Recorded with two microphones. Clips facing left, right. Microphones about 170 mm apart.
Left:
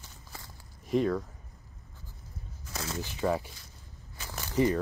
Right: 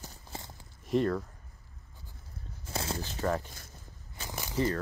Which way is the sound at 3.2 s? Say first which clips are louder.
Left 2 dB; 10° left (ahead or behind).